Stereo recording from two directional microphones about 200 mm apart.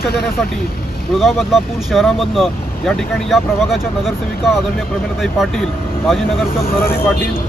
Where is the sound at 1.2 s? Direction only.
Centre (ahead or behind).